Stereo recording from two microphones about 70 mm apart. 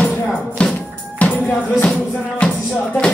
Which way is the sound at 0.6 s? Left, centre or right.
Centre.